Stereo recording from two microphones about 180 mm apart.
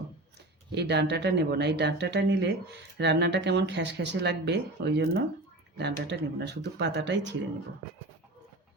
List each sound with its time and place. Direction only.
0.7 s speech: 70° right (ahead or behind)